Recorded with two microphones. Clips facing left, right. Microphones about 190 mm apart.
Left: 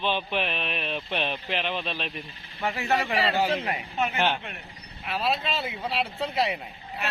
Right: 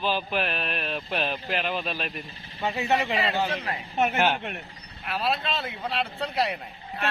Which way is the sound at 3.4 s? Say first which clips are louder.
Left 3 dB; 20° left (ahead or behind).